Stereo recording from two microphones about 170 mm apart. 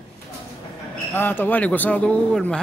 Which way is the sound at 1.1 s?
10° left (ahead or behind).